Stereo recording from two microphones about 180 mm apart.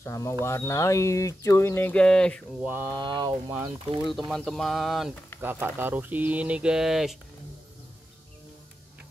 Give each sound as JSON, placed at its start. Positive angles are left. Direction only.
{"t": 0.0, "sound": "speech", "side_deg": 15}
{"t": 2.6, "sound": "speech", "side_deg": -15}
{"t": 3.0, "sound": "speech", "side_deg": -25}
{"t": 3.4, "sound": "speech", "side_deg": -10}
{"t": 4.3, "sound": "speech", "side_deg": 0}
{"t": 5.4, "sound": "speech", "side_deg": -10}